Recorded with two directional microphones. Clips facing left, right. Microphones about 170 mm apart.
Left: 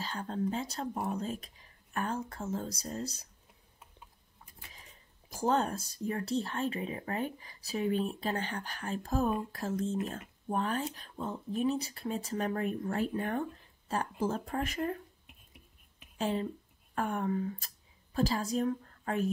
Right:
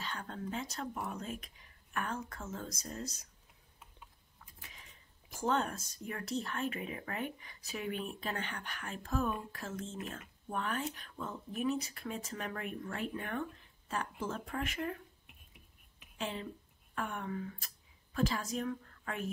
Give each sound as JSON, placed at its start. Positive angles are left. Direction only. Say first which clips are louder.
{"t": 0.0, "sound": "speech", "louder": "left 7 dB", "side_deg": 35}
{"t": 5.3, "sound": "speech", "louder": "left 4 dB", "side_deg": 35}
{"t": 16.2, "sound": "a woman's voice", "louder": "left 7 dB", "side_deg": 40}